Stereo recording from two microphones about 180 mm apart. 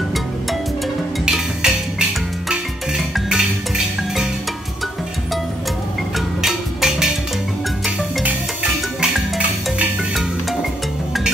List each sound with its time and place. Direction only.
1.2 s music: 5° right (ahead or behind)
3.3 s music: 5° right (ahead or behind)
6.1 s music: centre (ahead or behind)